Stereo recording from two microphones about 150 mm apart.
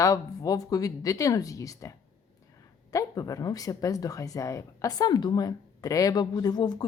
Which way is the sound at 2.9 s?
25° left (ahead or behind).